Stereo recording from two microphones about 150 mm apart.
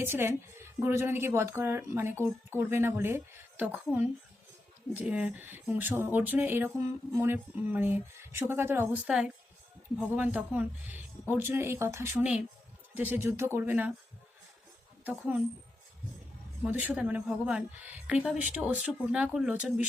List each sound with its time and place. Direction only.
0.0 s speech: 15° right (ahead or behind)
16.6 s speech: 10° right (ahead or behind)